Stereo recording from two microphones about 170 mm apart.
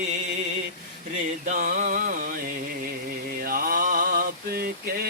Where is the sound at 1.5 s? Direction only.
50° right (ahead or behind).